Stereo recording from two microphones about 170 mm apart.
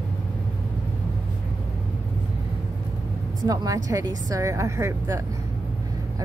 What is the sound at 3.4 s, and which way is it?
A woman's voice, 20° right (ahead or behind).